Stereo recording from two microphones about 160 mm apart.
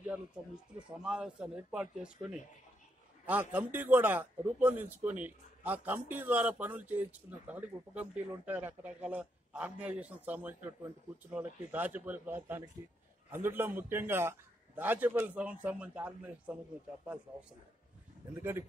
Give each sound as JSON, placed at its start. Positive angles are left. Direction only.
{"t": 0.7, "sound": "speech", "side_deg": -5}
{"t": 18.3, "sound": "speech", "side_deg": -15}